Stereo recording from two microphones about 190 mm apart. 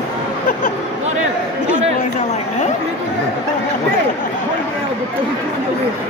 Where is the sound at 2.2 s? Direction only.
40° left (ahead or behind).